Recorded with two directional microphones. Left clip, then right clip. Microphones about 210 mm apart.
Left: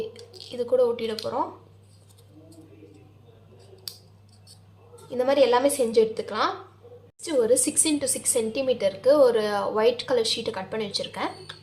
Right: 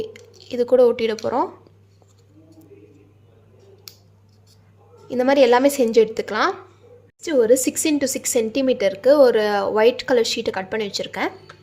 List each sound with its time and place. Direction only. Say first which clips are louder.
0.2 s a sound: left 2 dB; 5° left (ahead or behind)
0.5 s a woman's voice: right 7 dB; 40° right (ahead or behind)
5.0 s a woman's voice: right 5 dB; 40° right (ahead or behind)